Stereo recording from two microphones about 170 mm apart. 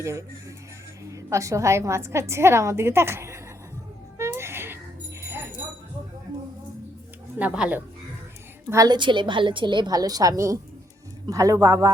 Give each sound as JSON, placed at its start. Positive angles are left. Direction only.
{"t": 0.0, "sound": "a woman's voice", "side_deg": -15}
{"t": 4.2, "sound": "a sound", "side_deg": -15}
{"t": 5.2, "sound": "bell", "side_deg": -15}
{"t": 7.3, "sound": "a woman's voice", "side_deg": -5}
{"t": 8.7, "sound": "a woman's voice", "side_deg": -25}